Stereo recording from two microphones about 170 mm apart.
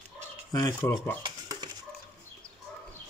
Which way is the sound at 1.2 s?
25° right (ahead or behind).